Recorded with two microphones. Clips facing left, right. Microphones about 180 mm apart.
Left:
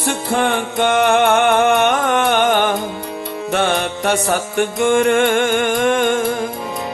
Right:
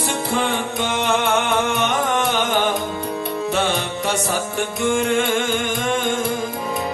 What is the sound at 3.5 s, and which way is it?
Music, 60° left (ahead or behind).